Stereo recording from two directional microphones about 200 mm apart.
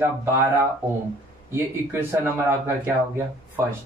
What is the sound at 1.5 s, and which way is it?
A man's voice, 10° right (ahead or behind).